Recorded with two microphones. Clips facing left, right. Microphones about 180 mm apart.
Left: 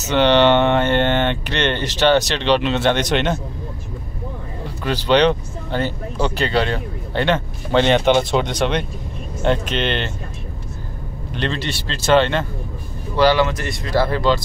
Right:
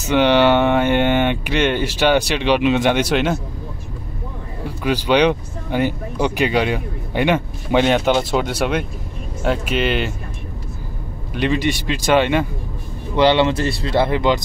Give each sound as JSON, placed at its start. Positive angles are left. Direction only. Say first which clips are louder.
{"t": 0.0, "sound": "speech", "louder": "even", "side_deg": -10}
{"t": 4.6, "sound": "speech", "louder": "right 1 dB", "side_deg": -10}
{"t": 11.3, "sound": "speech", "louder": "right 5 dB", "side_deg": -10}
{"t": 13.1, "sound": "speech", "louder": "right 1 dB", "side_deg": -20}